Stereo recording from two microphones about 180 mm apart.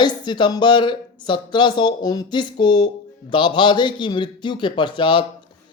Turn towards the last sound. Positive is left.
turn(degrees=25)  # may be behind; listen again after turning